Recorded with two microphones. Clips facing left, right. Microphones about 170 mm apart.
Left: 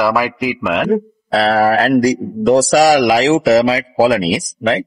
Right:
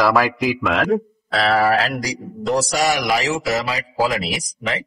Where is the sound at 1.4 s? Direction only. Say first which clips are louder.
Left 4 dB; 40° left (ahead or behind).